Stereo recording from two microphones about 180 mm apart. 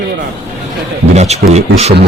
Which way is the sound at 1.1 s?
40° right (ahead or behind).